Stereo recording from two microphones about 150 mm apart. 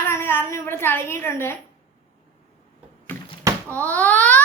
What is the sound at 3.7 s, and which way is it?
Wail, 10° left (ahead or behind).